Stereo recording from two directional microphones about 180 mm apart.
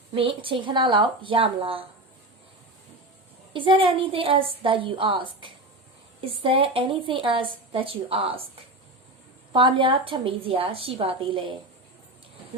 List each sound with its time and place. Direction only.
0.1 s a woman's voice: 30° right (ahead or behind)
3.5 s a woman's voice: 30° right (ahead or behind)
9.5 s a woman's voice: 25° right (ahead or behind)